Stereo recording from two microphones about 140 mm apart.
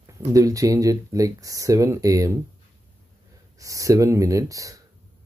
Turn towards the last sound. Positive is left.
turn(degrees=-25)  # may be behind; listen again after turning